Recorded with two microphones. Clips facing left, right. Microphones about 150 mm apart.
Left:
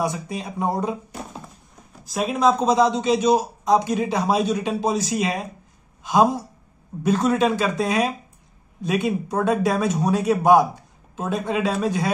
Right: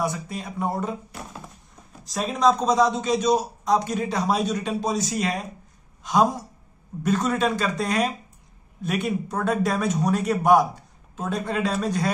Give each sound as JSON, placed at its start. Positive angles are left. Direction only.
{"t": 0.0, "sound": "a man's voice", "side_deg": 15}
{"t": 2.1, "sound": "a man's voice", "side_deg": 5}